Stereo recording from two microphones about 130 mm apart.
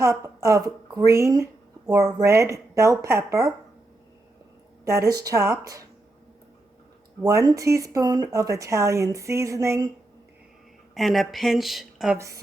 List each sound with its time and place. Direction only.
0.0 s speech: 25° right (ahead or behind)
4.9 s speech: 25° right (ahead or behind)
7.3 s speech: 25° right (ahead or behind)
10.9 s speech: centre (ahead or behind)
12.1 s speech: 20° right (ahead or behind)